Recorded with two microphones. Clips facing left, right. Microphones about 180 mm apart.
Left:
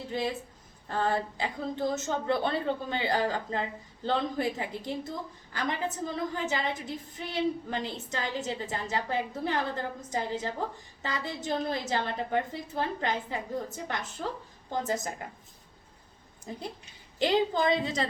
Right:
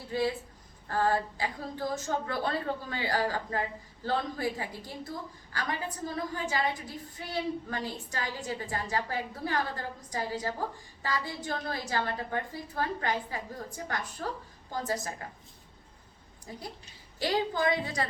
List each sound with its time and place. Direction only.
0.1 s a woman's voice: 20° left (ahead or behind)
17.2 s a woman's voice: 20° left (ahead or behind)